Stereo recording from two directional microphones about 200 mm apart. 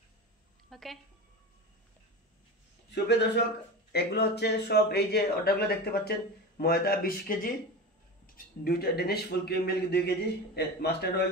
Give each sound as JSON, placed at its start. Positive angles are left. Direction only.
{"t": 0.7, "sound": "a sound", "side_deg": 0}
{"t": 2.9, "sound": "a man's voice", "side_deg": 60}
{"t": 8.6, "sound": "a man's voice", "side_deg": 50}